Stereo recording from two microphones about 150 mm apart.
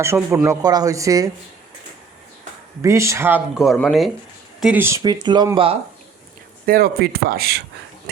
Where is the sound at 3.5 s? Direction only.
Centre (ahead or behind).